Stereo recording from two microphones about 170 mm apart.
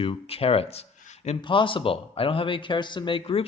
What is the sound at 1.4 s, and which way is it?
Speech, 30° left (ahead or behind).